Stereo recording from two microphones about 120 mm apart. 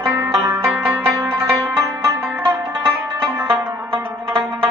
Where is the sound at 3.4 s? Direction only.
20° right (ahead or behind).